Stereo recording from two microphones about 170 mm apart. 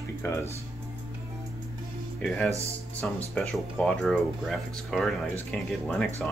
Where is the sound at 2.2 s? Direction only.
5° left (ahead or behind).